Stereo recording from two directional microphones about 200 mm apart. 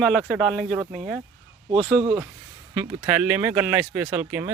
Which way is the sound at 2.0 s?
15° right (ahead or behind).